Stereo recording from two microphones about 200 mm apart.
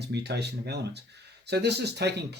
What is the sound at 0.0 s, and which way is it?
Speech, 55° right (ahead or behind).